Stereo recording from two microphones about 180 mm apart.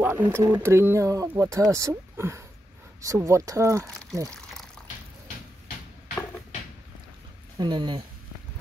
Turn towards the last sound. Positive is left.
turn(degrees=-25)  # may be behind; listen again after turning